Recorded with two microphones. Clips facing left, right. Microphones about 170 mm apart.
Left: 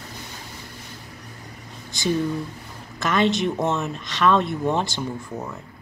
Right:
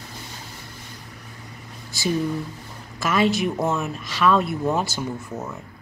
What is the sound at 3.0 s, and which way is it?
Speech, 5° right (ahead or behind).